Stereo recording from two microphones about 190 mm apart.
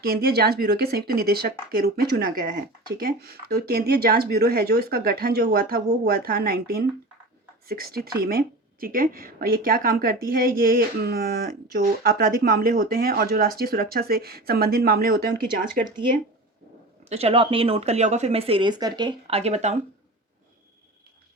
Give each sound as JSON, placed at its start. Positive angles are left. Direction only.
{"t": 0.0, "sound": "speech", "side_deg": -55}
{"t": 17.1, "sound": "speech", "side_deg": -30}